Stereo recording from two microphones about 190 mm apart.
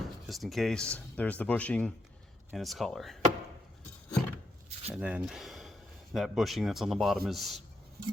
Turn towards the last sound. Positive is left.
turn(degrees=0)  # may be behind; listen again after turning